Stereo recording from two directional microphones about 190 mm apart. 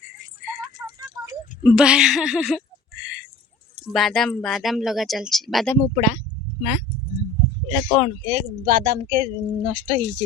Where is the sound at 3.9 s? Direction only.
Centre (ahead or behind).